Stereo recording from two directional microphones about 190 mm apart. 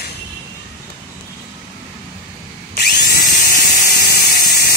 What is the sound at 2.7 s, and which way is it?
Tools, 50° left (ahead or behind).